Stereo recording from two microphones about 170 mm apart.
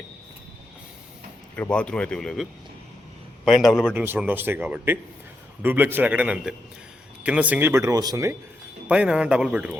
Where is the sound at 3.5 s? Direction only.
Centre (ahead or behind); by 8.3 s 20° right (ahead or behind).